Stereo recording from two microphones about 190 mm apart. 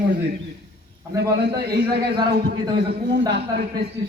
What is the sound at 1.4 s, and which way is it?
A man's voice, 60° right (ahead or behind).